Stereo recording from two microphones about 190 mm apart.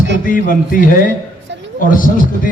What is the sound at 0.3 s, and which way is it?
A man's voice, 45° left (ahead or behind).